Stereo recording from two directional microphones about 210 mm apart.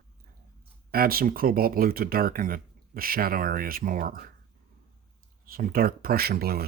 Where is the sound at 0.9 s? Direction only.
45° right (ahead or behind).